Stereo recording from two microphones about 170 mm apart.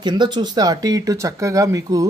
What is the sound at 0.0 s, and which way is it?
Speech, 25° right (ahead or behind).